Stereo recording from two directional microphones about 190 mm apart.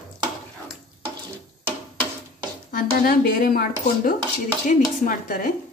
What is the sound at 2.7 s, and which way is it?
Speech, 50° left (ahead or behind).